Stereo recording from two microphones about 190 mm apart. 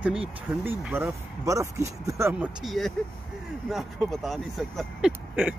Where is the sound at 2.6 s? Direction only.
Centre (ahead or behind).